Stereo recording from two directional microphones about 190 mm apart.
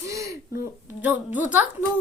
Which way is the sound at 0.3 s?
50° left (ahead or behind).